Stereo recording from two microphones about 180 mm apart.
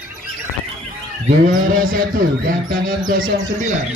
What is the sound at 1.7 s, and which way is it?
Speech, 50° right (ahead or behind).